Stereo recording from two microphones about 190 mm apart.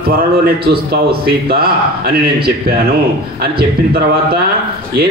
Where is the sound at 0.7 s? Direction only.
55° right (ahead or behind).